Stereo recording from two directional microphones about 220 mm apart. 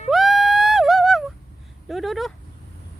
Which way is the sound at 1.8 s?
Centre (ahead or behind).